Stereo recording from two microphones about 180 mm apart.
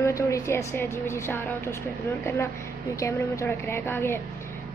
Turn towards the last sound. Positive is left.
turn(degrees=10)  # may be behind; listen again after turning